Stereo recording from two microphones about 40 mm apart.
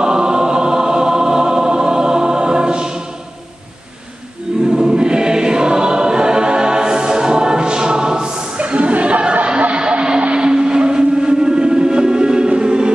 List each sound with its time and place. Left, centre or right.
0.0 s choir: centre
4.6 s choir: centre
8.5 s a sound: right